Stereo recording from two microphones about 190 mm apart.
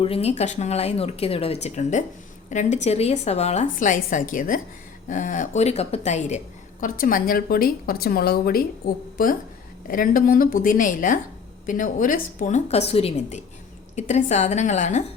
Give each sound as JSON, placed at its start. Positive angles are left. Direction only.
{"t": 0.0, "sound": "a woman's voice", "side_deg": 30}